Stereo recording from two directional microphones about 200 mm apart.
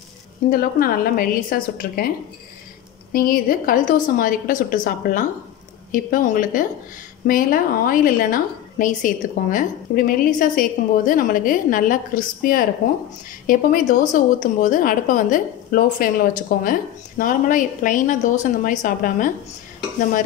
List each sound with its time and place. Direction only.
0.5 s a woman's voice: 45° left (ahead or behind)